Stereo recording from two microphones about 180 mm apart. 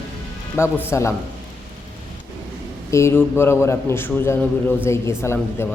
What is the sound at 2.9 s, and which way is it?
A man's voice, 15° left (ahead or behind).